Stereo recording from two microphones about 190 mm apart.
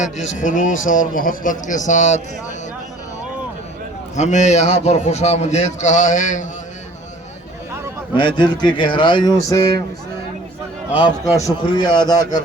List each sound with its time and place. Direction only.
0.3 s a man's voice: 40° left (ahead or behind)
4.1 s a man's voice: 40° left (ahead or behind)
8.1 s speech: 25° left (ahead or behind)
11.3 s speech: 20° left (ahead or behind)